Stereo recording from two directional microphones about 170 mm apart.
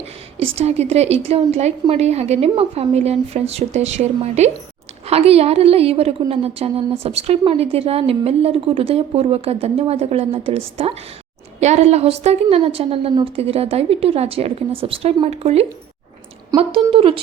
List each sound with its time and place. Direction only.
0.3 s speech: 40° right (ahead or behind)
16.9 s speech: 30° right (ahead or behind)